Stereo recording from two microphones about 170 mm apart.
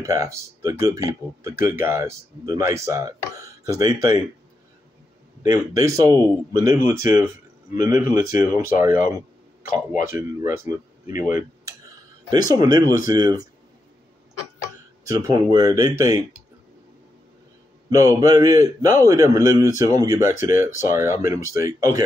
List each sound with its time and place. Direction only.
0.0 s speech: 20° right (ahead or behind)
5.4 s a man's voice: 20° right (ahead or behind)
15.0 s a man's voice: 20° right (ahead or behind)
17.8 s a man's voice: 20° right (ahead or behind)